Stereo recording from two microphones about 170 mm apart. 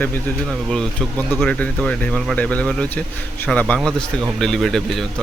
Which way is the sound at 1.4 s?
5° left (ahead or behind).